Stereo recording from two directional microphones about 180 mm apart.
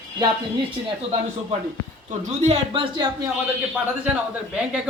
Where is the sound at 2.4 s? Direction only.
35° right (ahead or behind).